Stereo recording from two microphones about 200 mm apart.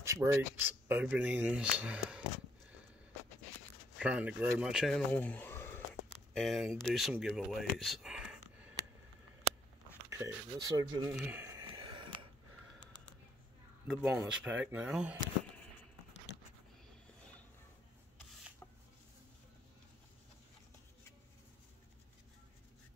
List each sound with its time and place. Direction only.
0.0 s speech: 15° right (ahead or behind)
4.0 s speech: 5° right (ahead or behind); by 5.8 s 10° left (ahead or behind)
6.3 s speech: centre (ahead or behind)
10.0 s speech: 15° right (ahead or behind)
11.1 s a sound: 10° right (ahead or behind)
13.8 s speech: 5° right (ahead or behind)